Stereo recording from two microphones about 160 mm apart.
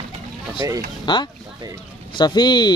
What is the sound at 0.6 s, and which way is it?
Speech, 20° right (ahead or behind).